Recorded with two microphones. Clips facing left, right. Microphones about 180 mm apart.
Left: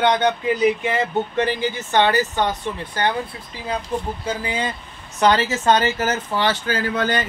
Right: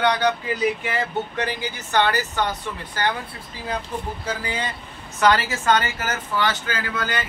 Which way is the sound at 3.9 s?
30° left (ahead or behind).